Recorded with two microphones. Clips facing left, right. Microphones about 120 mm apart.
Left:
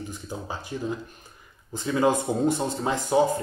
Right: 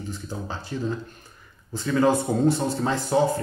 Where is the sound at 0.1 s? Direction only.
15° left (ahead or behind).